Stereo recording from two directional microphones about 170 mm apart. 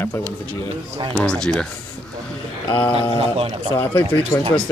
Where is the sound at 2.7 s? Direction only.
30° left (ahead or behind).